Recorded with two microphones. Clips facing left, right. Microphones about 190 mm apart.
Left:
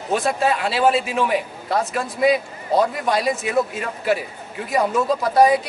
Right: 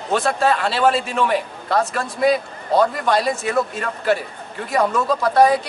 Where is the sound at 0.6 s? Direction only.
5° left (ahead or behind).